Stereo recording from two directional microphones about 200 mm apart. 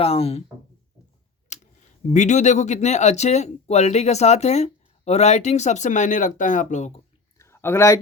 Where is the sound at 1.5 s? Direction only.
35° left (ahead or behind).